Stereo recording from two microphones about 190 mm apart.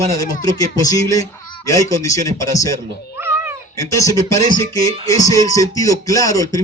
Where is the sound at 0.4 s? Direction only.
20° left (ahead or behind).